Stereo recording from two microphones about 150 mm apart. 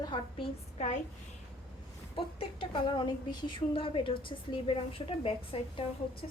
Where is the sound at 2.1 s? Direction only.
35° left (ahead or behind).